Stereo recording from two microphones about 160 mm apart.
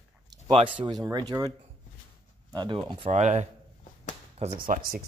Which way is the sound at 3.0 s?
45° right (ahead or behind).